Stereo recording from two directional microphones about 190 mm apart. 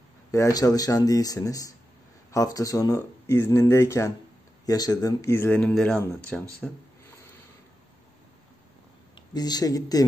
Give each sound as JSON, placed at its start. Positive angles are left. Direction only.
{"t": 0.3, "sound": "speech", "side_deg": 15}
{"t": 9.3, "sound": "speech", "side_deg": 20}